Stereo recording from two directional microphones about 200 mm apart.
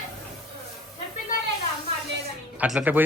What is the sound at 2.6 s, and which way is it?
Speech, 5° right (ahead or behind).